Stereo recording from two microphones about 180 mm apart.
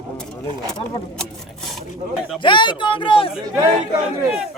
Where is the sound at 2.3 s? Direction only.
25° left (ahead or behind).